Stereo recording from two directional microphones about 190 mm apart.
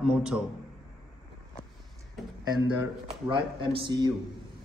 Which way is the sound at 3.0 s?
25° right (ahead or behind).